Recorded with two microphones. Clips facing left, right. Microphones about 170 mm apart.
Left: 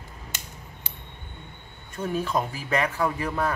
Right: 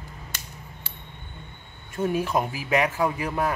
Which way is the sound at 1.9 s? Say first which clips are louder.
Right 2 dB; 20° right (ahead or behind).